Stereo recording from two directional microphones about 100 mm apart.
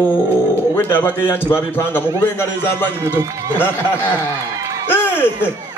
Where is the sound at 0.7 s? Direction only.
20° left (ahead or behind).